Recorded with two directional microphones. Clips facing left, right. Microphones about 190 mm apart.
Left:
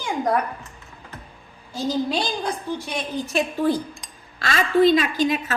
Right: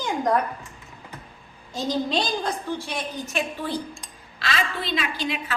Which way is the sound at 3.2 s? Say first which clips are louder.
Left 11 dB; 40° left (ahead or behind).